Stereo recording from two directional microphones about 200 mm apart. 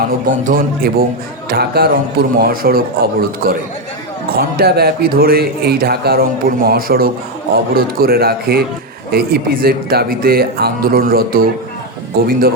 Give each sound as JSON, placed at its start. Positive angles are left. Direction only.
{"t": 0.3, "sound": "a man's voice", "side_deg": -45}